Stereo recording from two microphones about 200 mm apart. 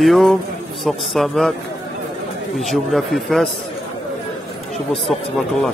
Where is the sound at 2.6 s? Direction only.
Centre (ahead or behind).